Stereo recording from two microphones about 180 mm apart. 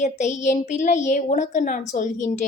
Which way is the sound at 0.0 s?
40° left (ahead or behind).